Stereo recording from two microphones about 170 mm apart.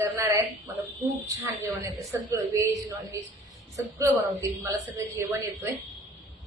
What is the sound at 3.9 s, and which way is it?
A woman's voice, 15° right (ahead or behind).